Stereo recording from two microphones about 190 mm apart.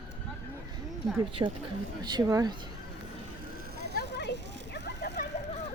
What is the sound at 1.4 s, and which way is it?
Speech, 20° right (ahead or behind).